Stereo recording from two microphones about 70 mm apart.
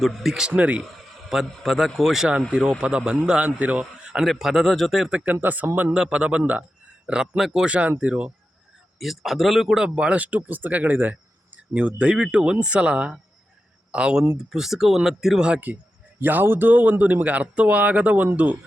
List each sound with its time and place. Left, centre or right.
0.0 s speech: centre
0.5 s speech: centre
1.3 s speech: centre
2.5 s speech: centre
5.1 s speech: right
5.9 s speech: centre
7.1 s speech: centre
9.0 s speech: centre
16.2 s speech: right